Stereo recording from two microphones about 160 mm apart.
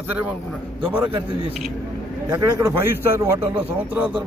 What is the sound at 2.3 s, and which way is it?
A man's voice, 15° right (ahead or behind).